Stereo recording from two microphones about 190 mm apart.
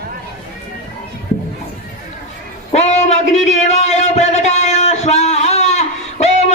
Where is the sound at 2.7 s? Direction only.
35° left (ahead or behind).